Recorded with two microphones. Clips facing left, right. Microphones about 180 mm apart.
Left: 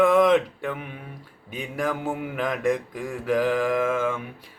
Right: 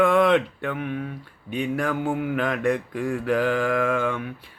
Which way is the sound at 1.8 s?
5° left (ahead or behind).